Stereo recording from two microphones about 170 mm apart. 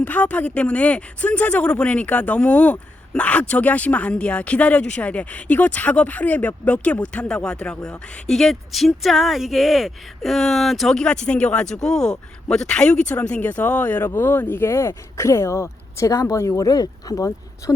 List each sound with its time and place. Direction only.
0.0 s speech: 10° left (ahead or behind)